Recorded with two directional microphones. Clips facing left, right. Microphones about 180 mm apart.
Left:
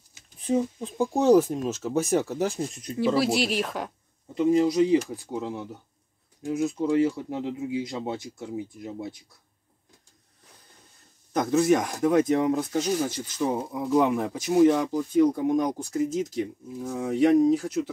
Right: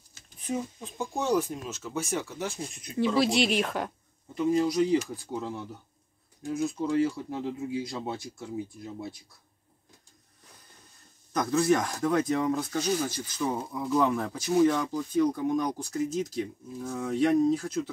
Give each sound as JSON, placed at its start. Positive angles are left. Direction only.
{"t": 0.5, "sound": "speech", "side_deg": 30}
{"t": 3.2, "sound": "speech", "side_deg": 5}
{"t": 4.3, "sound": "speech", "side_deg": 25}
{"t": 11.3, "sound": "speech", "side_deg": 20}